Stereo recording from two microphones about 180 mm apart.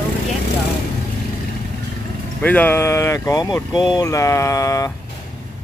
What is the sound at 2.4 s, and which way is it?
Speech, 10° left (ahead or behind).